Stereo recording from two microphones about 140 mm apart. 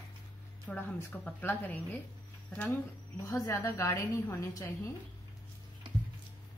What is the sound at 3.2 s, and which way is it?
A woman's voice, 20° left (ahead or behind).